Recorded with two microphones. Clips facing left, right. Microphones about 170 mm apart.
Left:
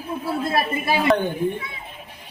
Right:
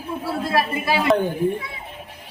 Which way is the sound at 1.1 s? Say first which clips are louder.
Right 1 dB; centre (ahead or behind).